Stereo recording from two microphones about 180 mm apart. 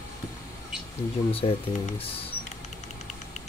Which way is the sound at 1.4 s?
30° left (ahead or behind).